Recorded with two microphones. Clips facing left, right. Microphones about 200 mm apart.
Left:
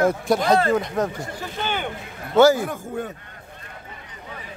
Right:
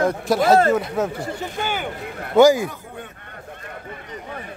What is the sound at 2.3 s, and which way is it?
Speech, 15° right (ahead or behind).